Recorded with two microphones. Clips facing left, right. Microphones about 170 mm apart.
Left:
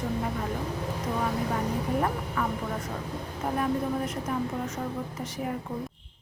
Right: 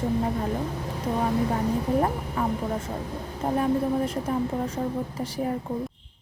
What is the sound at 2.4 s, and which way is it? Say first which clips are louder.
Speech: right 3 dB; 25° right (ahead or behind).